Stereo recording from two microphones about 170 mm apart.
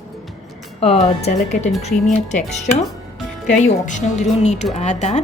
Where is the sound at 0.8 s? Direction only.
35° left (ahead or behind).